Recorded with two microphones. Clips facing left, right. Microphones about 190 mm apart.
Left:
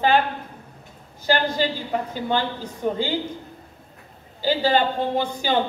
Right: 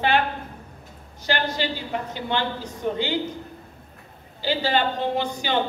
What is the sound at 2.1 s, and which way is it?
Speech, 45° left (ahead or behind).